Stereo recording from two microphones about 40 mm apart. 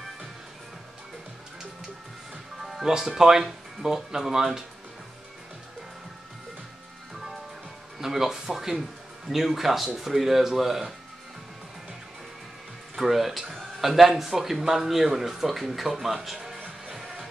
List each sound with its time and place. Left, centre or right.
2.6 s music: centre
2.9 s speech: centre
8.0 s speech: centre
12.9 s speech: centre
16.5 s music: right
16.9 s music: centre